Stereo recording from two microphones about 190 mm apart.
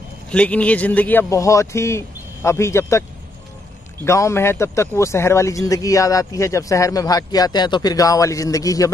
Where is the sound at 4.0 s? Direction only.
15° left (ahead or behind).